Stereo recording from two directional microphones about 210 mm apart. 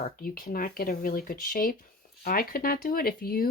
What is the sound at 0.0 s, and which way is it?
Speech, 45° left (ahead or behind).